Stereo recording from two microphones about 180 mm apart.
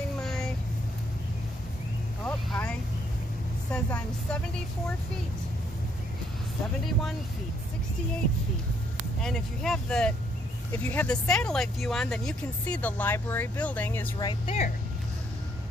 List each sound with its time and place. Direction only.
0.2 s vehicle: centre (ahead or behind)
2.2 s vehicle: 5° left (ahead or behind)
3.7 s speech: 5° left (ahead or behind)
9.2 s speech: centre (ahead or behind)
14.2 s speech: 30° left (ahead or behind)